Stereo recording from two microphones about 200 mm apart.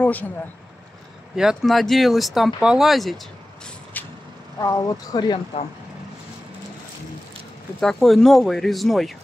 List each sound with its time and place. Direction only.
0.0 s speech: 10° left (ahead or behind)
1.3 s speech: 5° right (ahead or behind)
3.9 s vehicle: 10° left (ahead or behind)
4.6 s speech: 15° left (ahead or behind)
7.8 s speech: centre (ahead or behind)